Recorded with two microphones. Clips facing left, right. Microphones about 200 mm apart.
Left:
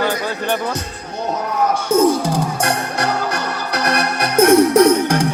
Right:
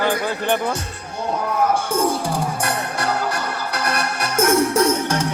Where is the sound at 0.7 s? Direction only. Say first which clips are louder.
Left 2 dB; 40° left (ahead or behind).